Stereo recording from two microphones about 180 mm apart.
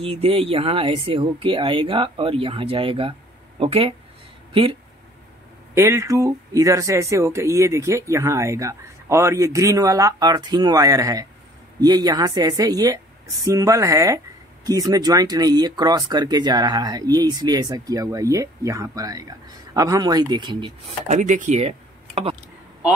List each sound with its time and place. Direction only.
0.0 s speech: 35° right (ahead or behind)
5.8 s a woman's voice: 15° right (ahead or behind)
21.1 s speech: 45° right (ahead or behind)